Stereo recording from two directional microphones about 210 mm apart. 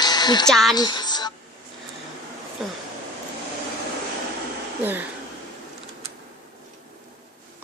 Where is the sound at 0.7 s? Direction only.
20° left (ahead or behind).